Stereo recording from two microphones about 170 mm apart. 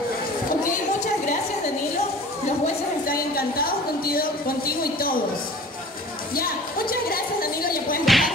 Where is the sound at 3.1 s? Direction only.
60° left (ahead or behind).